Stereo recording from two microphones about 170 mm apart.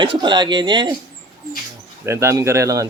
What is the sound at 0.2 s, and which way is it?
Speech, 25° right (ahead or behind).